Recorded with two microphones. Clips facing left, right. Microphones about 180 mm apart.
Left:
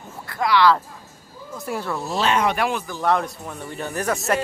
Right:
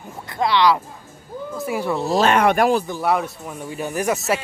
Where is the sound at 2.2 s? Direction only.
55° right (ahead or behind).